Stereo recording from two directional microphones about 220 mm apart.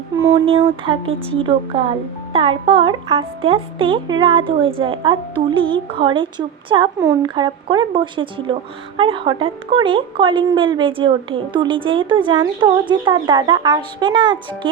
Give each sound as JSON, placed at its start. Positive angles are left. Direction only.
{"t": 0.2, "sound": "a woman's voice", "side_deg": -20}